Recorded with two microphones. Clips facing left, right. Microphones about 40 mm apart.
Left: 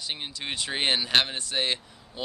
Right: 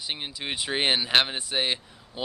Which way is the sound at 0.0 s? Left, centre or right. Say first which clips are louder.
Right 1 dB; centre.